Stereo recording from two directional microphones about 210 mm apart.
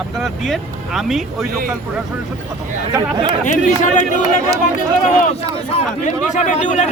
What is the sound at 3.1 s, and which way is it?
Speech, 20° right (ahead or behind).